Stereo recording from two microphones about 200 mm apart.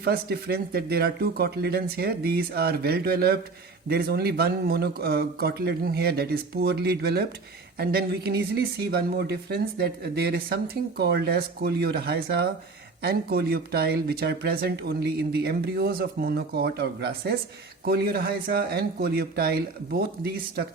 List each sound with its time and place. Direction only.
0.0 s speech: 50° right (ahead or behind)